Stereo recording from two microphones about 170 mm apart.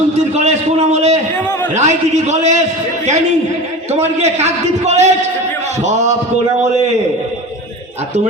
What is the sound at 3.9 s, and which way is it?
A man's voice, 40° right (ahead or behind).